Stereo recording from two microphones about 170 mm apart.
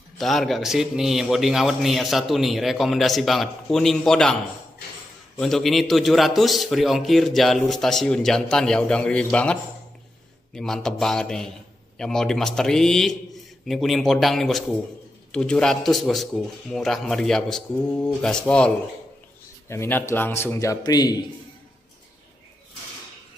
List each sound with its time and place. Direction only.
0.2 s a man's voice: centre (ahead or behind)
5.4 s a man's voice: centre (ahead or behind)
19.7 s speech: 15° left (ahead or behind)